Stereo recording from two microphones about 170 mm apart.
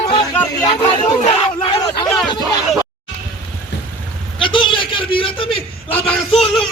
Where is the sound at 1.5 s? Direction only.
30° left (ahead or behind).